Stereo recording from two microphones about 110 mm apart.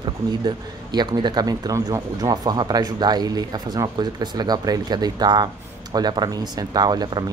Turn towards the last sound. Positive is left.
turn(degrees=-40)  # may be behind; listen again after turning